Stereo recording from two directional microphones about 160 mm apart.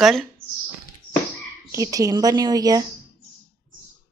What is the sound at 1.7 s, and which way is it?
Speech, 20° right (ahead or behind).